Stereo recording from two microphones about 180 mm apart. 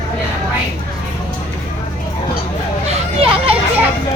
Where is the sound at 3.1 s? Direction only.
30° right (ahead or behind).